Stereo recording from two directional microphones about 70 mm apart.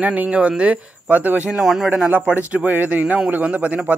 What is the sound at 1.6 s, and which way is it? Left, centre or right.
Speech, centre.